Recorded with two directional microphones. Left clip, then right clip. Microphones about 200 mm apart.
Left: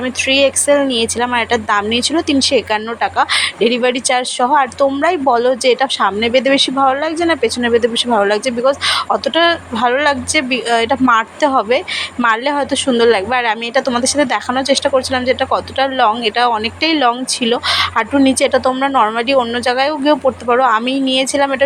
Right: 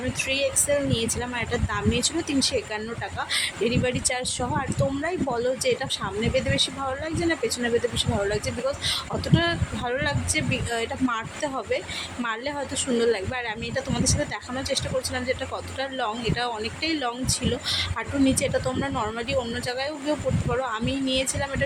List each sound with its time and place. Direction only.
0.2 s speech: 20° left (ahead or behind)